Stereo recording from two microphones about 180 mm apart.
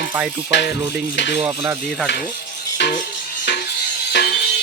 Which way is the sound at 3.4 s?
60° left (ahead or behind).